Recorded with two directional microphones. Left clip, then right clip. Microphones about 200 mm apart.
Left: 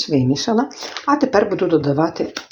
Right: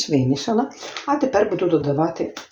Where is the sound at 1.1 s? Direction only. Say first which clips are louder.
Left 3 dB; 40° left (ahead or behind).